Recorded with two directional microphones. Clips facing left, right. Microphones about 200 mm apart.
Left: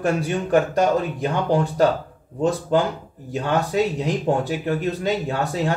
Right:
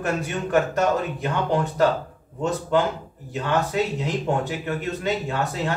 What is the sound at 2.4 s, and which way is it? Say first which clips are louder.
A man's voice: left 2 dB; 35° left (ahead or behind).